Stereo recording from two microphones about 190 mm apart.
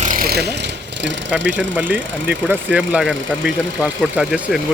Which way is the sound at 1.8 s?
10° right (ahead or behind).